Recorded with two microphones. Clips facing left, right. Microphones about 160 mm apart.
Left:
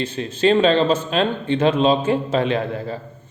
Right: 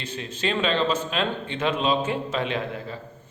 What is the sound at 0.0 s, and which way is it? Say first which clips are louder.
A man's voice: left 10 dB; 30° left (ahead or behind).